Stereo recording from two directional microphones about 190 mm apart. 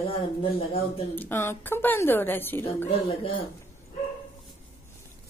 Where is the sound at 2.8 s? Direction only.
30° left (ahead or behind).